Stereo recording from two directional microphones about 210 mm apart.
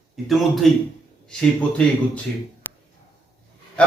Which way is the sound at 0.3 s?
Centre (ahead or behind).